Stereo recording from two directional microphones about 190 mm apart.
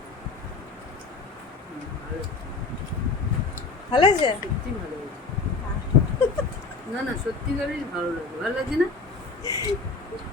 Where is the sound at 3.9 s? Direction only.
25° left (ahead or behind).